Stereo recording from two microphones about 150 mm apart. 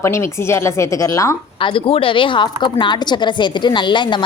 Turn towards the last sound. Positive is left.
turn(degrees=30)  # may be behind; listen again after turning